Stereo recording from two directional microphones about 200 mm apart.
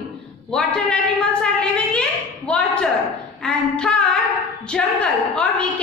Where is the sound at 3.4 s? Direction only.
5° left (ahead or behind).